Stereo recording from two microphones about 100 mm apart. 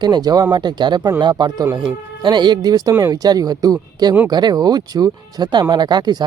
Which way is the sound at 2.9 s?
25° right (ahead or behind).